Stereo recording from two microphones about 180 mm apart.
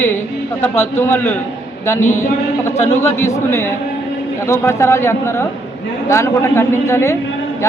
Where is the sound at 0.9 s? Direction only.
10° left (ahead or behind).